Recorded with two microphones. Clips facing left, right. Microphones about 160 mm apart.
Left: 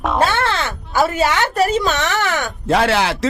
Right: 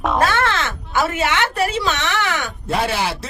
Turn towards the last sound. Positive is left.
turn(degrees=85)